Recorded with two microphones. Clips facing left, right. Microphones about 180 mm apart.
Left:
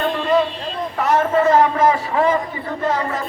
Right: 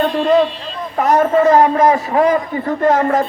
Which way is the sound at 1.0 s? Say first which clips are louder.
Right 4 dB; 45° right (ahead or behind).